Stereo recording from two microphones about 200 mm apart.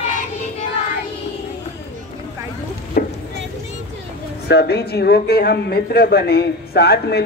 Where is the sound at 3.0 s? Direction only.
45° left (ahead or behind).